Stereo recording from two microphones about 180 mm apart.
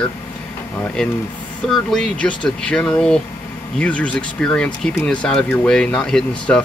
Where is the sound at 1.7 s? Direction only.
Centre (ahead or behind).